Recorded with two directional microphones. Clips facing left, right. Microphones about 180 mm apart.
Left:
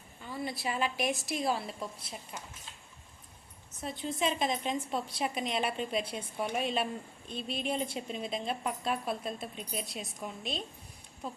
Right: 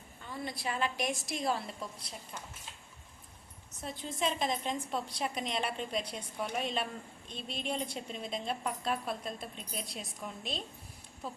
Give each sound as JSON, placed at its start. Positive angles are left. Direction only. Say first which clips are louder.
{"t": 0.3, "sound": "a woman's voice", "louder": "left 2 dB", "side_deg": 5}
{"t": 3.8, "sound": "a woman's voice", "louder": "left 3 dB", "side_deg": 0}